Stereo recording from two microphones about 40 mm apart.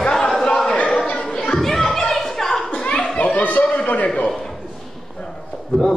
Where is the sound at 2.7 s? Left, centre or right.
Left.